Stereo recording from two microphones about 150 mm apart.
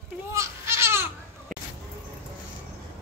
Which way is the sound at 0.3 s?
20° right (ahead or behind).